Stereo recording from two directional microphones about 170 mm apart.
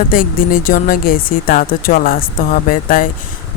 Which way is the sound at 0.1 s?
55° left (ahead or behind).